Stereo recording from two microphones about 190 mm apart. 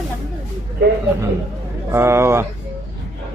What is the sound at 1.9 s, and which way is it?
Speech, 15° right (ahead or behind).